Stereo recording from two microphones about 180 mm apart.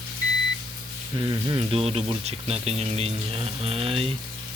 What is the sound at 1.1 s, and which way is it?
Speech, 25° right (ahead or behind).